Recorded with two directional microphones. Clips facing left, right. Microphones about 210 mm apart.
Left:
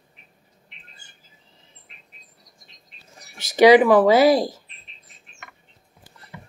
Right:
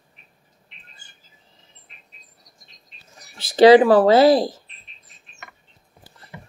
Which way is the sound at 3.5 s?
15° left (ahead or behind).